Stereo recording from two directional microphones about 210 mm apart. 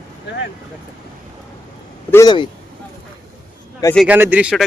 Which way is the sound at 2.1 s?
15° left (ahead or behind).